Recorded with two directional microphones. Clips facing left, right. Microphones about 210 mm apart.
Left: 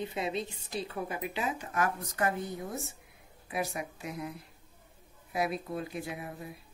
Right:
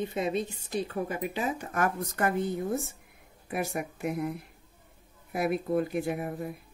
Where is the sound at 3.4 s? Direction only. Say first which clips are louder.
Right 3 dB; 55° right (ahead or behind).